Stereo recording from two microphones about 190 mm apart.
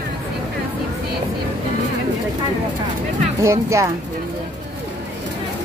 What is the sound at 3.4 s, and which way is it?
Speech, 15° right (ahead or behind).